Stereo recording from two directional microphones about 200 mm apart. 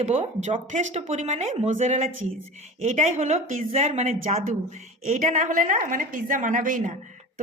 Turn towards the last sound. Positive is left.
turn(degrees=-40)  # may be behind; listen again after turning